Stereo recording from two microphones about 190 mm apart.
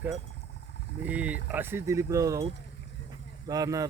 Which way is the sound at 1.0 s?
5° right (ahead or behind).